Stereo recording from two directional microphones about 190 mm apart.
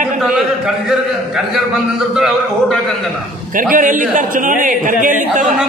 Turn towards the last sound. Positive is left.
turn(degrees=-45)  # may be behind; listen again after turning